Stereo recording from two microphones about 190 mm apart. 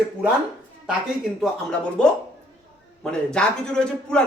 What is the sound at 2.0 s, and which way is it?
A man's voice, 5° left (ahead or behind).